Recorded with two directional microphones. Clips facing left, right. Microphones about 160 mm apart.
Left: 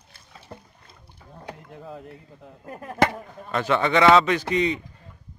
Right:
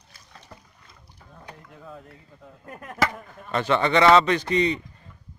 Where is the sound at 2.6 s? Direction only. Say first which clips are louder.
Left 3 dB; 30° left (ahead or behind).